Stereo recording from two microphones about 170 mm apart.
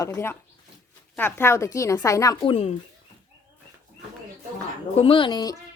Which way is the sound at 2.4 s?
35° left (ahead or behind).